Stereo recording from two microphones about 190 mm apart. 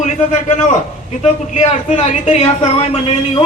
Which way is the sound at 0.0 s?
40° left (ahead or behind).